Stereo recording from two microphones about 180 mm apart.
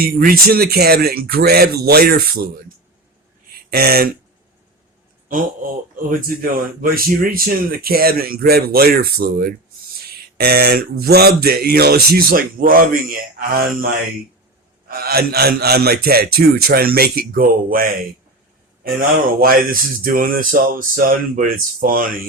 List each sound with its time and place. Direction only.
0.0 s speech: 55° right (ahead or behind)
3.5 s speech: 60° right (ahead or behind)
5.3 s speech: 50° right (ahead or behind)
18.9 s speech: 50° right (ahead or behind)